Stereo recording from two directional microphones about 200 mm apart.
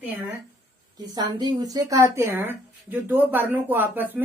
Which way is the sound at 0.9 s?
20° right (ahead or behind).